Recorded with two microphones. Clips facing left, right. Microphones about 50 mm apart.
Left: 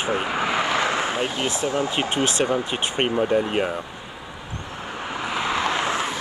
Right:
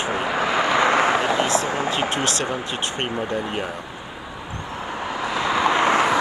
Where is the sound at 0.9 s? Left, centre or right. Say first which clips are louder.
Right 6 dB; right.